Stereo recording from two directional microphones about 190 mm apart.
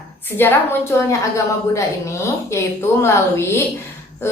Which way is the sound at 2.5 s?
15° left (ahead or behind).